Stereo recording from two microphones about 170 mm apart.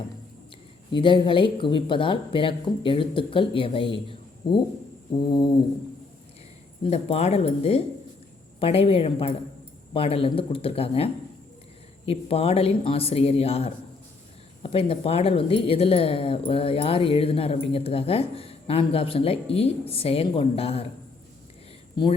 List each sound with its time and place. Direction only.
0.9 s speech: 30° left (ahead or behind)
5.2 s brass instrument: 25° left (ahead or behind)
6.8 s speech: 40° left (ahead or behind)